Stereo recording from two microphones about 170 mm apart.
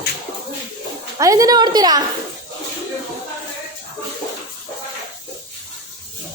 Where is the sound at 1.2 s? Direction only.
20° right (ahead or behind).